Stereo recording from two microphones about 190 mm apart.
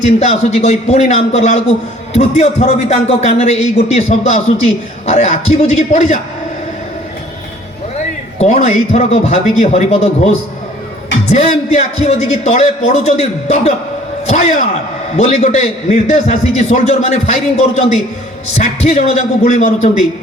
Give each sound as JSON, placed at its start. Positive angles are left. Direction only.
{"t": 0.2, "sound": "a man's voice", "side_deg": 35}
{"t": 8.4, "sound": "a man's voice", "side_deg": 35}
{"t": 18.5, "sound": "a man's voice", "side_deg": 35}